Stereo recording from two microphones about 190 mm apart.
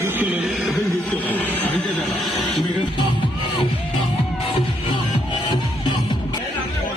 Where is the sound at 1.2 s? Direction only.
10° left (ahead or behind).